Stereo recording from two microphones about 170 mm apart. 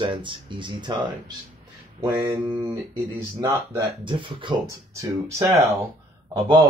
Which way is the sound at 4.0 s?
30° right (ahead or behind).